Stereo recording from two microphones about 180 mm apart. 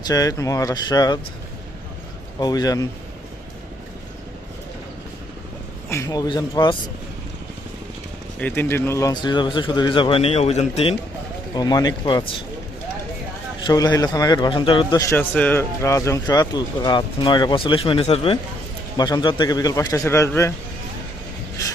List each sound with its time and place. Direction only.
0.0 s a man's voice: 20° left (ahead or behind)
2.4 s a man's voice: 20° left (ahead or behind)
5.9 s a man's voice: 20° left (ahead or behind)
8.4 s a man's voice: 10° left (ahead or behind); by 10.9 s 35° left (ahead or behind)
11.5 s a man's voice: 20° left (ahead or behind)
13.7 s a man's voice: 20° left (ahead or behind)